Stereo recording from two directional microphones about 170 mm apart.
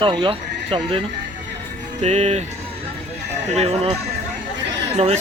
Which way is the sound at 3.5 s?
40° right (ahead or behind).